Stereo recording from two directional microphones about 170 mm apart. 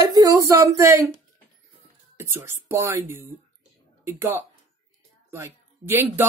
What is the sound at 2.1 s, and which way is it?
Speech, 15° right (ahead or behind).